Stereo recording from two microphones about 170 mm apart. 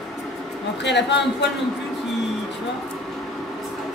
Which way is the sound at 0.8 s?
90° left.